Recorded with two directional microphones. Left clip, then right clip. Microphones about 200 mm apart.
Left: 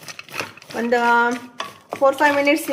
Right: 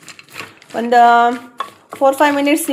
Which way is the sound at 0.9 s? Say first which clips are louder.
Right 7 dB; 25° right (ahead or behind).